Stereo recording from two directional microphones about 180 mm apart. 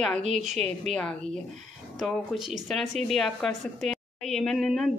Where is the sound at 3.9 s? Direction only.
5° left (ahead or behind).